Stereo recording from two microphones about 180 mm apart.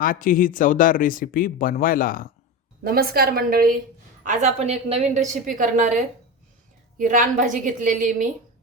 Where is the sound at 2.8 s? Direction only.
55° right (ahead or behind).